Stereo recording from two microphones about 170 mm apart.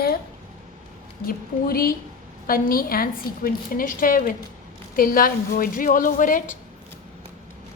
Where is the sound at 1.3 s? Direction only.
60° left (ahead or behind).